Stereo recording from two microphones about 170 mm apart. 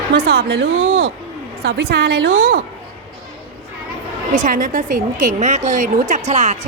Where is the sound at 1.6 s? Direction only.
75° right (ahead or behind).